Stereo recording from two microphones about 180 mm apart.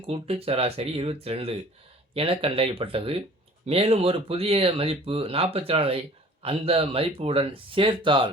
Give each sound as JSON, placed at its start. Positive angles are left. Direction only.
{"t": 0.1, "sound": "speech", "side_deg": -35}